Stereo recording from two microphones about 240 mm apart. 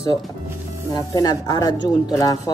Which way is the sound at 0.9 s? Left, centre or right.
Centre.